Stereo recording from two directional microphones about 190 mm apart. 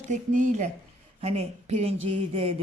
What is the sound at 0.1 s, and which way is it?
A woman's voice, 40° right (ahead or behind).